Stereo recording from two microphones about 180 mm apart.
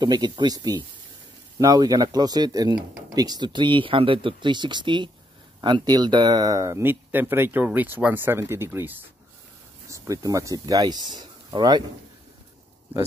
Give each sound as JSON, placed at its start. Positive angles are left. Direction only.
{"t": 0.0, "sound": "speech", "side_deg": -25}